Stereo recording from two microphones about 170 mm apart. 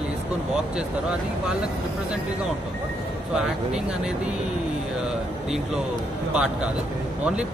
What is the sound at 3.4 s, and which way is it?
Speech, 5° right (ahead or behind).